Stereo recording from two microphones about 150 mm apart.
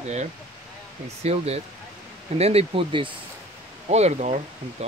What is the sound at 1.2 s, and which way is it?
Speech, 45° right (ahead or behind).